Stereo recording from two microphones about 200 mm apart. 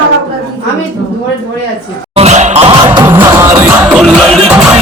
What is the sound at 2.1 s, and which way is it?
Music, 35° right (ahead or behind).